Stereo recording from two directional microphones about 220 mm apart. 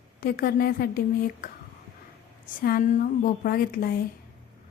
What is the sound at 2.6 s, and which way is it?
A woman's voice, 40° left (ahead or behind).